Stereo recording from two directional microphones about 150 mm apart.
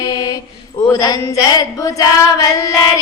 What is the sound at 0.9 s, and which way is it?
Child singing, 25° left (ahead or behind).